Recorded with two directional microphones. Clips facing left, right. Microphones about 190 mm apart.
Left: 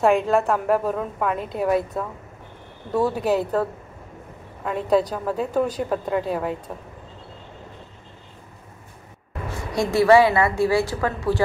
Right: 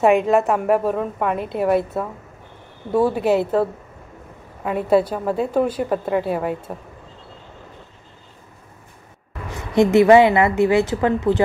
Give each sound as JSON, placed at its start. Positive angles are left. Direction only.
{"t": 0.0, "sound": "a woman's voice", "side_deg": -5}
{"t": 4.6, "sound": "a woman's voice", "side_deg": -5}
{"t": 9.5, "sound": "a woman's voice", "side_deg": -20}